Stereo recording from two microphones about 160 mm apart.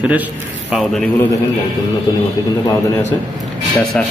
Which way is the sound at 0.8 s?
5° left (ahead or behind).